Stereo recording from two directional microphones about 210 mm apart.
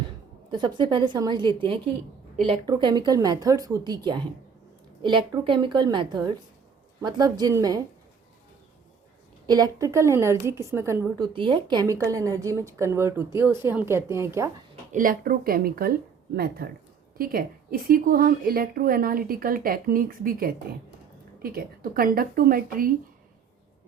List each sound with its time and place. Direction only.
0.5 s a woman's voice: 20° right (ahead or behind)
9.5 s a woman's voice: 20° right (ahead or behind)
14.9 s a woman's voice: 40° right (ahead or behind)